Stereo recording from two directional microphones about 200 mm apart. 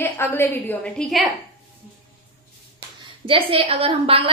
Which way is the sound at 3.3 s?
30° right (ahead or behind).